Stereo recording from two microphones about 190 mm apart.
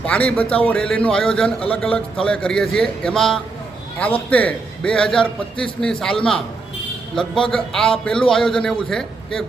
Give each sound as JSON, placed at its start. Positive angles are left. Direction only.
{"t": 0.0, "sound": "a man's voice", "side_deg": 5}
{"t": 7.2, "sound": "a man's voice", "side_deg": 5}